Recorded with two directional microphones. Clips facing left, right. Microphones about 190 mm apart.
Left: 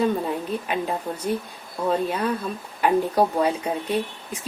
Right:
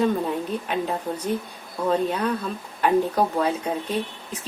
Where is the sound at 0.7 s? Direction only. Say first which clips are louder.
Right 1 dB; 5° left (ahead or behind).